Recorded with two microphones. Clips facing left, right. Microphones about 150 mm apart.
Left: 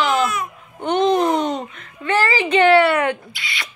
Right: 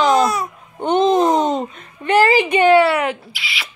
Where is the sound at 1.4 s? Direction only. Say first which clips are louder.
Right 4 dB; 35° right (ahead or behind).